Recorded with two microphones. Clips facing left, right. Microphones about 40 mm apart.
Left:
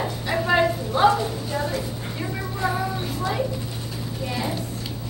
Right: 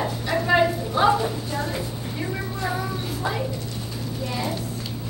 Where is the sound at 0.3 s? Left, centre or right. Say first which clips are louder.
Even; centre.